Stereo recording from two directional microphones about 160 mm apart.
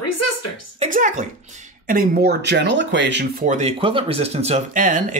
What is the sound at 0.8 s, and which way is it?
Speech, 55° right (ahead or behind).